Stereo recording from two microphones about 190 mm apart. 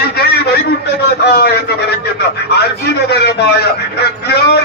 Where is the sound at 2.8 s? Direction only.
60° left (ahead or behind).